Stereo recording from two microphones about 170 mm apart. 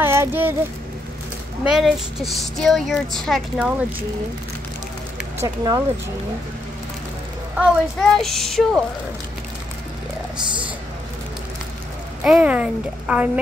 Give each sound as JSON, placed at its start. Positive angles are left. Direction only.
{"t": 0.0, "sound": "speech", "side_deg": -15}
{"t": 1.6, "sound": "speech", "side_deg": -5}
{"t": 5.4, "sound": "speech", "side_deg": -20}
{"t": 7.5, "sound": "speech", "side_deg": 0}
{"t": 12.2, "sound": "speech", "side_deg": -5}